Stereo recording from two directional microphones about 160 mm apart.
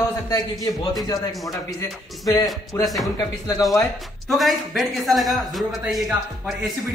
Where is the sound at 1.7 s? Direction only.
25° left (ahead or behind).